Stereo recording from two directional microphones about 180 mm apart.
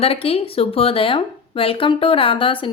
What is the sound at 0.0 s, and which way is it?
Speech, 30° left (ahead or behind).